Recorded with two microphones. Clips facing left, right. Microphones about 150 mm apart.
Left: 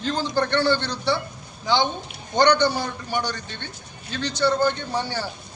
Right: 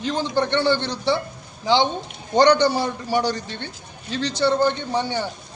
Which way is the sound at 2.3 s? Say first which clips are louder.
Right 3 dB; 30° right (ahead or behind).